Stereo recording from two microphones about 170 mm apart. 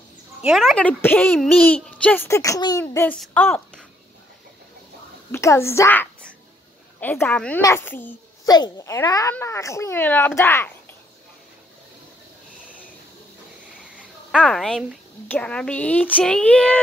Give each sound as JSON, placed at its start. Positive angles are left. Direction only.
{"t": 0.4, "sound": "a woman's voice", "side_deg": 0}
{"t": 5.3, "sound": "speech", "side_deg": 15}
{"t": 8.5, "sound": "speech", "side_deg": 25}
{"t": 14.3, "sound": "speech", "side_deg": 5}
{"t": 15.2, "sound": "speech", "side_deg": 10}